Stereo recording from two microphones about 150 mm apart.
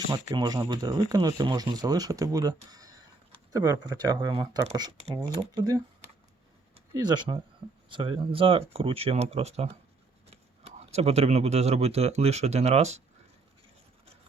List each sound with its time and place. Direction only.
0.1 s speech: 25° right (ahead or behind); by 9.7 s 45° right (ahead or behind)
10.8 s speech: 45° right (ahead or behind)